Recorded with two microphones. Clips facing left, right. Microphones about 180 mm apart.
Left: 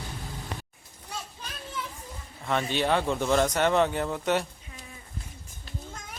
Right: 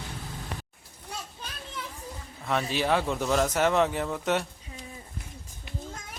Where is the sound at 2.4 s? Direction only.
Centre (ahead or behind).